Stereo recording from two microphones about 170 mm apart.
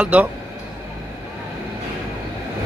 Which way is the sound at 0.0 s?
10° right (ahead or behind).